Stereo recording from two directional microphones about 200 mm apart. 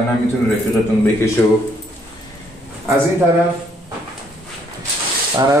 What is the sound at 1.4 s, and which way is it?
Speech, 15° left (ahead or behind).